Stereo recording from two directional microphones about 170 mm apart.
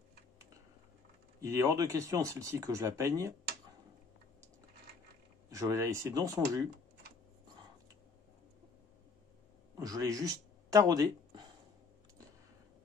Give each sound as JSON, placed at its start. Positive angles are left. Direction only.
{"t": 1.4, "sound": "speech", "side_deg": -15}
{"t": 5.5, "sound": "speech", "side_deg": -20}
{"t": 9.8, "sound": "speech", "side_deg": -20}